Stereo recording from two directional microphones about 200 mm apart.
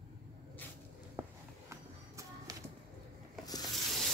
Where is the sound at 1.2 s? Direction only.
10° right (ahead or behind).